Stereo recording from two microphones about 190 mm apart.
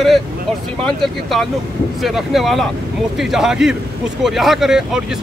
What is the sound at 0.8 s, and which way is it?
Speech, centre (ahead or behind).